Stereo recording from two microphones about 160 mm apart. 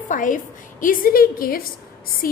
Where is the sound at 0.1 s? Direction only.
55° left (ahead or behind).